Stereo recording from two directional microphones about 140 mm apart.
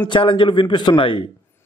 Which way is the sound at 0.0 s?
35° left (ahead or behind).